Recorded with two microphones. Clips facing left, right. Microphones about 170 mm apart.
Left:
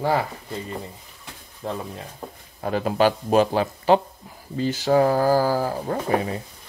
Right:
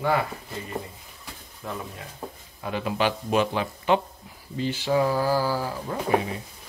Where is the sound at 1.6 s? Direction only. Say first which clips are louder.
Left 5 dB; 30° left (ahead or behind).